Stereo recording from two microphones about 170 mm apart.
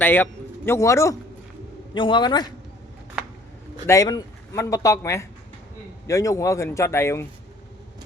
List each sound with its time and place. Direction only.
0.0 s a man's voice: 10° left (ahead or behind)
1.9 s speech: 30° left (ahead or behind)
3.8 s a man's voice: 20° left (ahead or behind)